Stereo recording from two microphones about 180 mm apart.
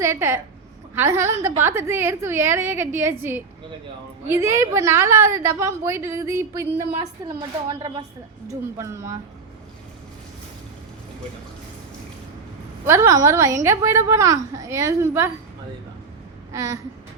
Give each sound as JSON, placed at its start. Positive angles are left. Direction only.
{"t": 0.0, "sound": "a woman's voice", "side_deg": -15}
{"t": 4.3, "sound": "a woman's voice", "side_deg": -15}
{"t": 12.8, "sound": "a woman's voice", "side_deg": -15}
{"t": 16.5, "sound": "a sound", "side_deg": -20}